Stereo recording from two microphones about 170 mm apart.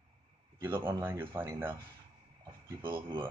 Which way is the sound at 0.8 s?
15° right (ahead or behind).